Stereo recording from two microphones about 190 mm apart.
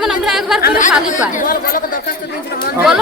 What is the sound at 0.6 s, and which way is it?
Speech, 50° left (ahead or behind).